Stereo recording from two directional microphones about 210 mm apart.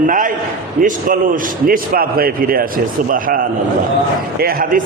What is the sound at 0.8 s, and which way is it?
A man's voice, 40° right (ahead or behind).